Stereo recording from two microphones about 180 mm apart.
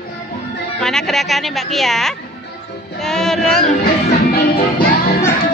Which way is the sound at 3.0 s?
Centre (ahead or behind).